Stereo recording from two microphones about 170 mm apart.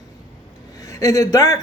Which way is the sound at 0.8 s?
20° left (ahead or behind).